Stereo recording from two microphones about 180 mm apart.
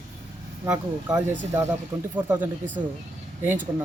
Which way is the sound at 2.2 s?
10° right (ahead or behind).